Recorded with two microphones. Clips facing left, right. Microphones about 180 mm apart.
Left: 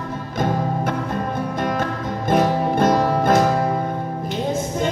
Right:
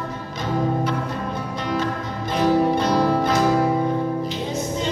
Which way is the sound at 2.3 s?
50° left (ahead or behind).